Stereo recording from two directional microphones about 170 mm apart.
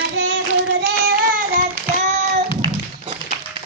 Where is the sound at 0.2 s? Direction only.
90° right.